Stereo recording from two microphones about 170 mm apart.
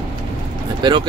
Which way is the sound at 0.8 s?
25° right (ahead or behind).